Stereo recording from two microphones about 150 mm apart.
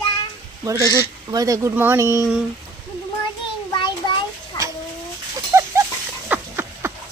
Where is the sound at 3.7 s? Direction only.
30° left (ahead or behind).